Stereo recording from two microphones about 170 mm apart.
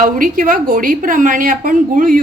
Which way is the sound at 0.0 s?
55° right (ahead or behind).